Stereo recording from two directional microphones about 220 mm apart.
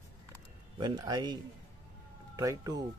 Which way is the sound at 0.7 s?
20° right (ahead or behind).